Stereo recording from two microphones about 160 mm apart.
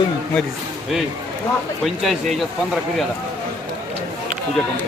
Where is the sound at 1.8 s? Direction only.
Centre (ahead or behind).